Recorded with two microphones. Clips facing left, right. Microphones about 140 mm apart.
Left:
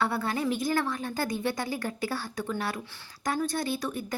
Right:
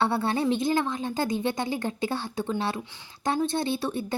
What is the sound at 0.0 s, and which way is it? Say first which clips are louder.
Speech: right 4 dB; 25° right (ahead or behind).